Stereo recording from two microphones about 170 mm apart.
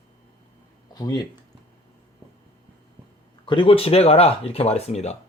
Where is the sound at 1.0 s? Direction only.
25° left (ahead or behind).